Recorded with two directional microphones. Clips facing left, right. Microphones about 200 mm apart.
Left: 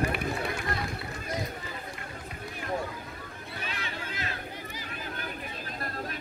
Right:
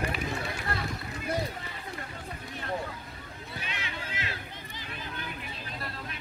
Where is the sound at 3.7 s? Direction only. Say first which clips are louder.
Left 2 dB; 40° left (ahead or behind).